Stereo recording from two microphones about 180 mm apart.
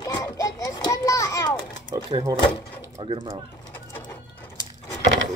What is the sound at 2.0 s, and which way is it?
Speech, 25° right (ahead or behind).